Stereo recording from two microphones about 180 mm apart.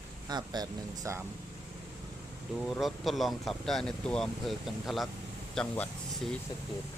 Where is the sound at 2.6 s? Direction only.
Centre (ahead or behind).